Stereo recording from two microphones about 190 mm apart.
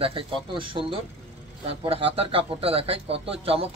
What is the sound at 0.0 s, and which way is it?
Speech, 25° right (ahead or behind).